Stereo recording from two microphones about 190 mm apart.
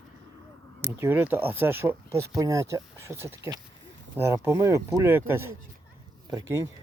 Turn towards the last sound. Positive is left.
turn(degrees=-15)  # may be behind; listen again after turning